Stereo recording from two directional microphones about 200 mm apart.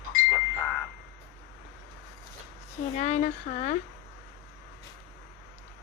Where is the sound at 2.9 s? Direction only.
35° left (ahead or behind).